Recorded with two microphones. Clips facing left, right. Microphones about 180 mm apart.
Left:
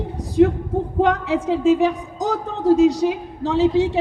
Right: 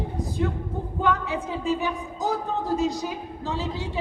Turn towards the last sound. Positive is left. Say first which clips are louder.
# left 13 dB
turn(degrees=75)  # may be behind; listen again after turning